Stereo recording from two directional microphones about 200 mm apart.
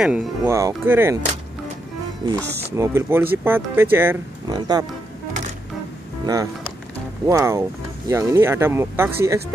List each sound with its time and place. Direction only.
0.0 s speech: 10° right (ahead or behind)
2.2 s speech: 20° right (ahead or behind)
6.2 s speech: 15° right (ahead or behind)